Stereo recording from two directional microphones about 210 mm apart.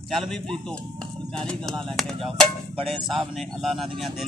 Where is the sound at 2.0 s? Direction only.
Centre (ahead or behind).